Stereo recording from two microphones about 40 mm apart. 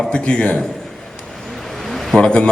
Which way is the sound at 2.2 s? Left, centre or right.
Left.